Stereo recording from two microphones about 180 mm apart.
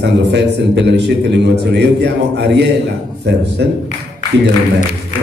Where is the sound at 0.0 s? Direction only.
70° right (ahead or behind).